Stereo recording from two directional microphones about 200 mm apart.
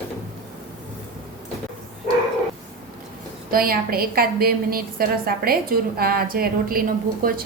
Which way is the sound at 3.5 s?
45° right (ahead or behind).